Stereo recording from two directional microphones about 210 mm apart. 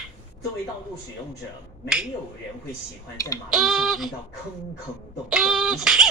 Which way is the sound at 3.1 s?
15° left (ahead or behind).